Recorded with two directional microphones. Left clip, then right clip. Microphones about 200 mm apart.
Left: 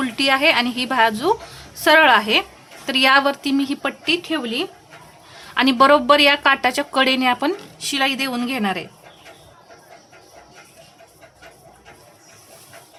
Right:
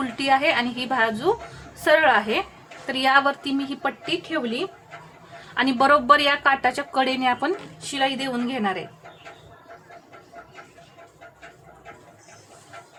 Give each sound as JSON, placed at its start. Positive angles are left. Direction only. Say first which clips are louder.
{"t": 0.0, "sound": "a woman's voice", "louder": "left 4 dB", "side_deg": 30}
{"t": 5.5, "sound": "a woman's voice", "louder": "left 4 dB", "side_deg": 25}